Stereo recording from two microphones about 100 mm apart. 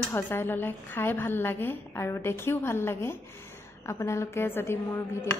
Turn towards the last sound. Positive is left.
turn(degrees=25)  # may be behind; listen again after turning